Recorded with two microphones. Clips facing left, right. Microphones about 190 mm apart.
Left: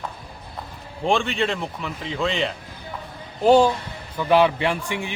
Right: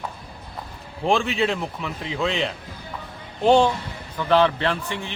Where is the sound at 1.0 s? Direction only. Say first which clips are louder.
Right 1 dB; centre (ahead or behind).